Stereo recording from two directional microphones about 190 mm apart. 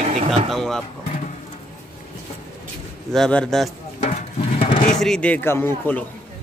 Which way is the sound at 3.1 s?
5° left (ahead or behind).